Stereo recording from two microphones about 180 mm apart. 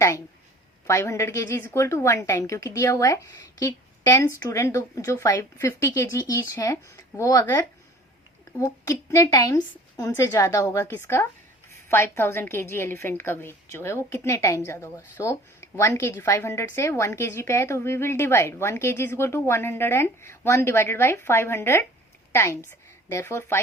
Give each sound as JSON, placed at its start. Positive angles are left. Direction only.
{"t": 0.9, "sound": "a woman's voice", "side_deg": 15}